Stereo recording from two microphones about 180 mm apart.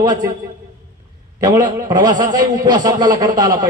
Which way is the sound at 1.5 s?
20° right (ahead or behind).